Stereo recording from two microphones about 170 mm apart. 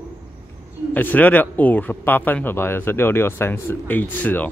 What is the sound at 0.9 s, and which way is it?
Speech, 10° left (ahead or behind).